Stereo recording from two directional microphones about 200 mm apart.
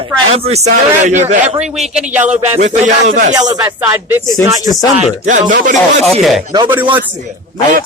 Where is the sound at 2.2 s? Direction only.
35° right (ahead or behind).